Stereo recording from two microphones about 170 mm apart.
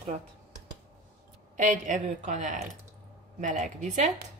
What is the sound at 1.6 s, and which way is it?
A woman's voice, 50° right (ahead or behind).